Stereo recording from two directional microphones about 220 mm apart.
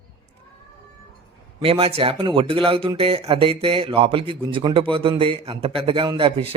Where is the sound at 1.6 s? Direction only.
25° right (ahead or behind).